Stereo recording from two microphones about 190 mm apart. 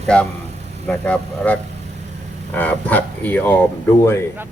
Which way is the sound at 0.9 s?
5° left (ahead or behind).